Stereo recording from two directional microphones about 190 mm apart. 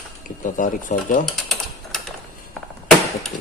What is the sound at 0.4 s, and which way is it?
Speech, 45° left (ahead or behind).